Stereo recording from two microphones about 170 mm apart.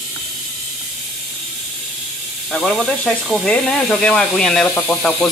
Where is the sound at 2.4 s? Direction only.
5° left (ahead or behind).